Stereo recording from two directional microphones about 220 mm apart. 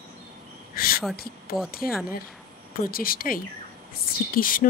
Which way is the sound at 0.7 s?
40° left (ahead or behind).